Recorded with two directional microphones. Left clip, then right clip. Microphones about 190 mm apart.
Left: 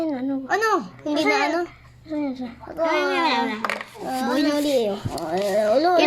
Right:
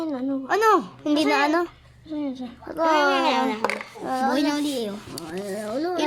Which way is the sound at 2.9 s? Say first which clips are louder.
Right 1 dB; 55° right (ahead or behind).